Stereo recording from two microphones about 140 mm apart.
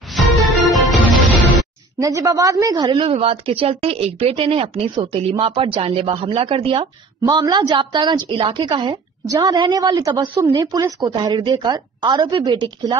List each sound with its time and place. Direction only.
0.1 s music: centre (ahead or behind)
2.0 s a woman's voice: 25° right (ahead or behind)